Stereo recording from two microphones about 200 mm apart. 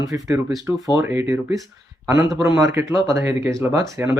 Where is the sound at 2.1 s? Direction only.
15° right (ahead or behind).